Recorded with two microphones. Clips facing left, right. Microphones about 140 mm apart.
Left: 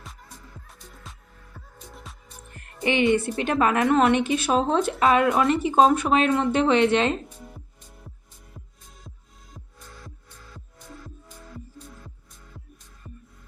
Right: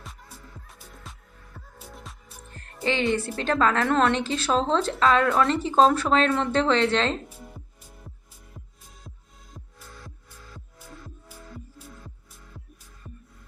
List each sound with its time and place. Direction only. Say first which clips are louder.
0.0 s music: even; centre (ahead or behind)
2.8 s speech: left 4 dB; 20° left (ahead or behind)
4.2 s speech: left 2 dB; 20° left (ahead or behind)
7.3 s music: even; 5° right (ahead or behind)
10.5 s music: left 2 dB; 5° right (ahead or behind)